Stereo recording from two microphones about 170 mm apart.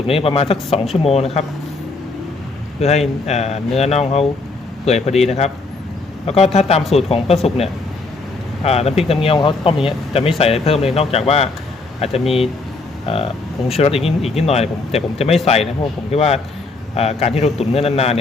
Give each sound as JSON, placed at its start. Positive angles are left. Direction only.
{"t": 0.1, "sound": "speech", "side_deg": 35}
{"t": 2.8, "sound": "speech", "side_deg": 40}